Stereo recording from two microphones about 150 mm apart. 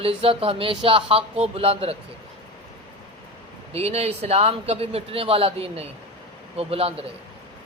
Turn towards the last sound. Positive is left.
turn(degrees=-40)  # may be behind; listen again after turning